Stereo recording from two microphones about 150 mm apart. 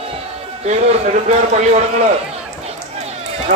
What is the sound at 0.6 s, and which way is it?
Speech, 50° right (ahead or behind).